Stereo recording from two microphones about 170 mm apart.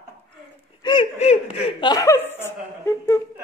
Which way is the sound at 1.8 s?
20° left (ahead or behind).